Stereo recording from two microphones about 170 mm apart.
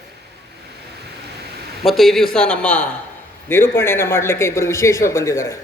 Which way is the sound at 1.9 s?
Centre (ahead or behind).